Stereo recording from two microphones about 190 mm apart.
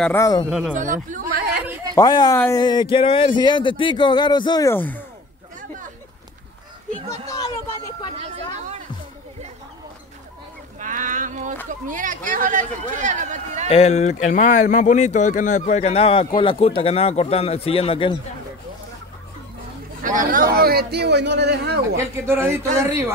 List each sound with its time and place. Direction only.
0.0 s speech: 15° left (ahead or behind)
0.5 s speech: centre (ahead or behind)
0.7 s speech: 40° right (ahead or behind)
2.0 s speech: 20° left (ahead or behind)
2.3 s speech: 10° left (ahead or behind)
2.6 s speech: 25° left (ahead or behind)
7.1 s a sound: 20° left (ahead or behind)
10.8 s a sound: 45° right (ahead or behind)
11.9 s speech: 45° right (ahead or behind)
13.7 s speech: 35° left (ahead or behind)
20.0 s a man's voice: 45° right (ahead or behind); by 21.8 s 60° right (ahead or behind)
21.9 s speech: 15° right (ahead or behind)